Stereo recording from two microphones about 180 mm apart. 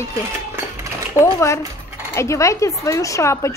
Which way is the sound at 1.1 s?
15° left (ahead or behind).